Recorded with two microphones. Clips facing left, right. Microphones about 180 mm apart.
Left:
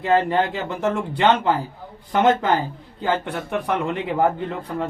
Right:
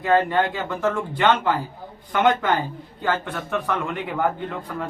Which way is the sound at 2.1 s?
30° left (ahead or behind).